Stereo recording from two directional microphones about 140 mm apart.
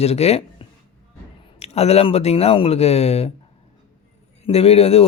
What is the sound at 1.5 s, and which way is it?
Speech, 50° left (ahead or behind).